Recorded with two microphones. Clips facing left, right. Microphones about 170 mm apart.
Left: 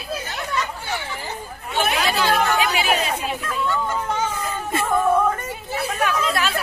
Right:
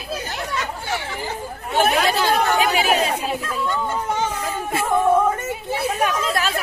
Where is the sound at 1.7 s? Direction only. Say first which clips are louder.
Right 3 dB; 45° right (ahead or behind).